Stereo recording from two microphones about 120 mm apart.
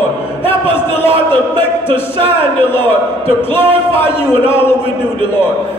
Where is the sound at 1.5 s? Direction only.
15° left (ahead or behind).